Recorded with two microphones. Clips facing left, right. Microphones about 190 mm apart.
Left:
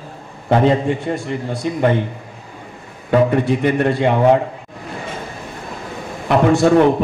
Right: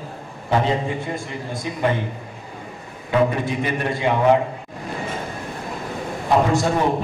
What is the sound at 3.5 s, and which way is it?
Speech, 65° left (ahead or behind).